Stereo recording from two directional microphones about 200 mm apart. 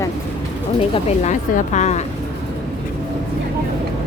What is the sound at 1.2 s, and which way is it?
Speech, 35° left (ahead or behind).